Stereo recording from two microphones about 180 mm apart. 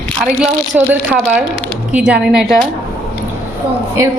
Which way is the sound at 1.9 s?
5° right (ahead or behind).